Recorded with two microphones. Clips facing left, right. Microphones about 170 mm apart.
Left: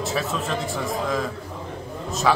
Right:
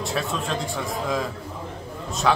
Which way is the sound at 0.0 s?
Centre (ahead or behind).